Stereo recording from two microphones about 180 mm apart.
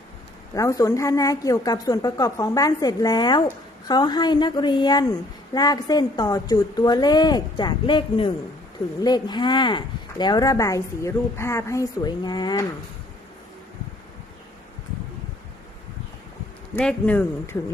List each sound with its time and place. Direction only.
0.5 s speech: 20° left (ahead or behind)
16.7 s speech: 10° left (ahead or behind)